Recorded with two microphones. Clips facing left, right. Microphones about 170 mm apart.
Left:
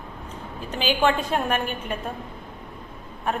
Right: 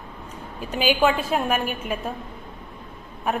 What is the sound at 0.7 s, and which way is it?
A woman's voice, 10° right (ahead or behind).